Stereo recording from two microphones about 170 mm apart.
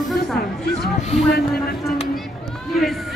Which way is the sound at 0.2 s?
70° left (ahead or behind).